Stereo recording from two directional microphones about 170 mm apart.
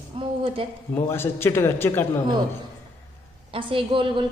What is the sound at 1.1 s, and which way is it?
A man's voice, 15° left (ahead or behind).